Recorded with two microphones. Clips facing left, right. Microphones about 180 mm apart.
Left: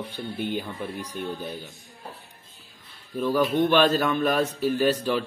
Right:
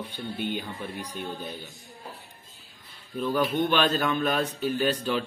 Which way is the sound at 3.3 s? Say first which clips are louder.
Left 4 dB; 5° left (ahead or behind).